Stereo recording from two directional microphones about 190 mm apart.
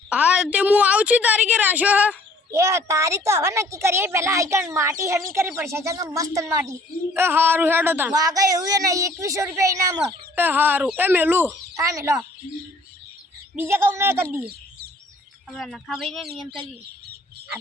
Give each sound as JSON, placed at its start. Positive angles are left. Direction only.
{"t": 0.1, "sound": "a sound", "side_deg": -5}
{"t": 0.5, "sound": "a woman's voice", "side_deg": -5}
{"t": 13.6, "sound": "a woman's voice", "side_deg": -10}
{"t": 15.4, "sound": "speech", "side_deg": 0}